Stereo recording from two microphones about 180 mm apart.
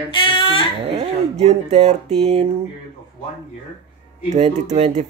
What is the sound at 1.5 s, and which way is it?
Speech, 40° right (ahead or behind).